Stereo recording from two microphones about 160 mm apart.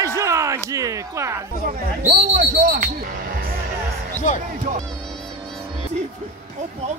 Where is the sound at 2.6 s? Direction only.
55° right (ahead or behind).